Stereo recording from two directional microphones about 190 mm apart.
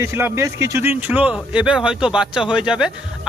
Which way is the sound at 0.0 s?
15° right (ahead or behind).